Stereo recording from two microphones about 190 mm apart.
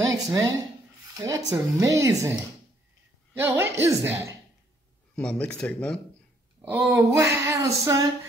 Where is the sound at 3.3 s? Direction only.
15° right (ahead or behind).